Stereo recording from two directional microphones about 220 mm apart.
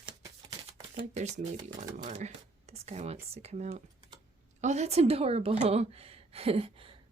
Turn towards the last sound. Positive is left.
turn(degrees=-25)  # may be behind; listen again after turning